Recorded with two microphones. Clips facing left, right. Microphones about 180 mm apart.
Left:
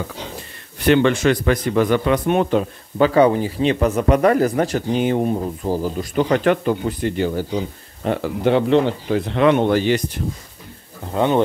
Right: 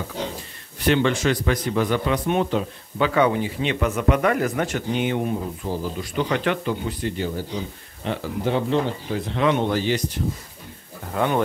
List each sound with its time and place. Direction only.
0.8 s a man's voice: 60° left (ahead or behind)
3.2 s speech: 35° left (ahead or behind); by 7.4 s 60° left (ahead or behind)
8.2 s a man's voice: 70° left (ahead or behind)
11.1 s speech: 25° left (ahead or behind)